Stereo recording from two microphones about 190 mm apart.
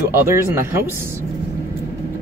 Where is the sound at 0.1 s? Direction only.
10° right (ahead or behind).